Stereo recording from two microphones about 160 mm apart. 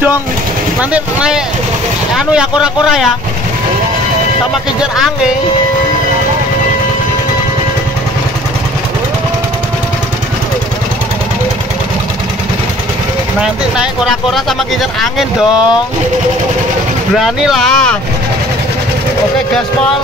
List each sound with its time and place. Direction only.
0.7 s speech: 5° right (ahead or behind)
4.7 s speech: 5° right (ahead or behind)
13.4 s speech: centre (ahead or behind)
17.2 s speech: centre (ahead or behind)